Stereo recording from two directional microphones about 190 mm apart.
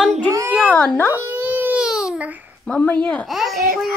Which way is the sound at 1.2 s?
10° right (ahead or behind).